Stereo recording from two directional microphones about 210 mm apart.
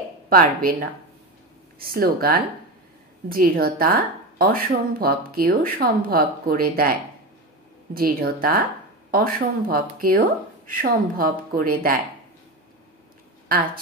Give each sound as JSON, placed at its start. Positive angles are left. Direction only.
{"t": 0.3, "sound": "speech", "side_deg": -45}